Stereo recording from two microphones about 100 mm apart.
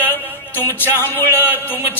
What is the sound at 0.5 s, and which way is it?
Speech, 20° left (ahead or behind).